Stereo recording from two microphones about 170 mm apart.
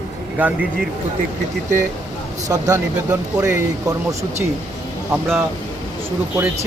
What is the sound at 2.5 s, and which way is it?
Speech, 15° right (ahead or behind).